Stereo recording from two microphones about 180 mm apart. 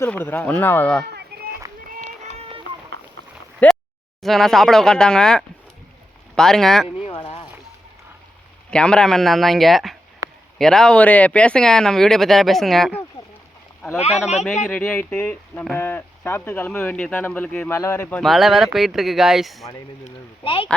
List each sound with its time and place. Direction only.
0.0 s speech: 10° left (ahead or behind)
1.3 s run: 60° right (ahead or behind)
2.4 s a sound: 30° right (ahead or behind)
3.6 s a sound: 10° left (ahead or behind)
4.2 s speech: centre (ahead or behind)
6.8 s speech: 30° left (ahead or behind)
8.7 s speech: 5° left (ahead or behind)
14.4 s speech: 10° left (ahead or behind)
20.4 s speech: 30° left (ahead or behind)